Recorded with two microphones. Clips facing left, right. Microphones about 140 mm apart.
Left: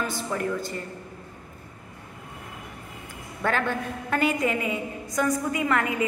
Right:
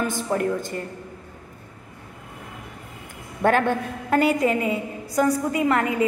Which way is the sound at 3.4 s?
50° right (ahead or behind).